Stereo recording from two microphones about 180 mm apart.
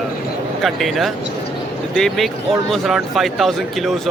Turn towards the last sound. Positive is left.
turn(degrees=0)  # may be behind; listen again after turning